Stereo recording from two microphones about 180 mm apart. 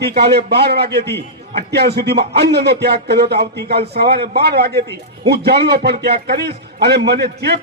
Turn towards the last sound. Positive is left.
turn(degrees=-65)  # may be behind; listen again after turning